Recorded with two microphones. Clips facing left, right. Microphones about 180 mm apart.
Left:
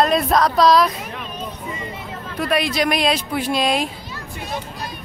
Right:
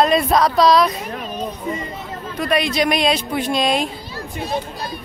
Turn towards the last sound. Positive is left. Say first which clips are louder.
# right 4 dB
turn(degrees=-35)  # may be behind; listen again after turning